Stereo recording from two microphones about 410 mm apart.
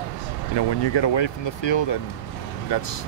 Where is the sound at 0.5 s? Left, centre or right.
Left.